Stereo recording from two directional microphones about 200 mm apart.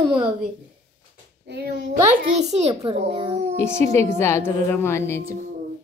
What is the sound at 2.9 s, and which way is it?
Speech, 30° right (ahead or behind).